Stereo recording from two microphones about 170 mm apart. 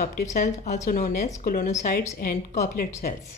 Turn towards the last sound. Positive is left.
turn(degrees=50)  # may be behind; listen again after turning